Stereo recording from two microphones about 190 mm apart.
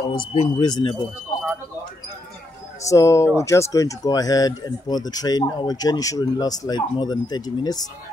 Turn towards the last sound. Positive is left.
turn(degrees=20)  # may be behind; listen again after turning